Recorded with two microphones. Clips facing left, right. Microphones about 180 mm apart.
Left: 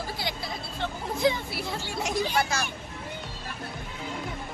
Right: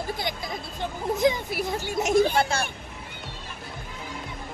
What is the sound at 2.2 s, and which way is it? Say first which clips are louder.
Speech: right 4 dB; 55° right (ahead or behind).